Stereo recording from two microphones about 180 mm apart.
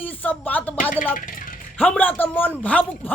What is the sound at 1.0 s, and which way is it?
Speech, 50° left (ahead or behind).